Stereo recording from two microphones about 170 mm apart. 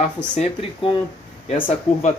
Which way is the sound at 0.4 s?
35° left (ahead or behind).